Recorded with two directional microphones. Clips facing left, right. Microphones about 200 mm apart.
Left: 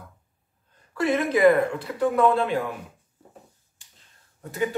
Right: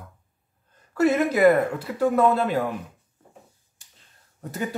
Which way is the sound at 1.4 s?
10° right (ahead or behind).